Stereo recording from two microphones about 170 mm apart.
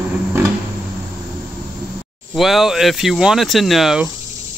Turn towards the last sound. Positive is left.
turn(degrees=-5)  # may be behind; listen again after turning